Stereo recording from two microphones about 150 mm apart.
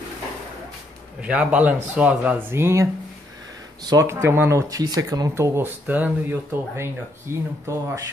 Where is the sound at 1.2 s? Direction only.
5° right (ahead or behind).